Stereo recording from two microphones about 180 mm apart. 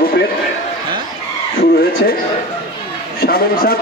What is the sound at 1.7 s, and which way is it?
Speech, 55° left (ahead or behind).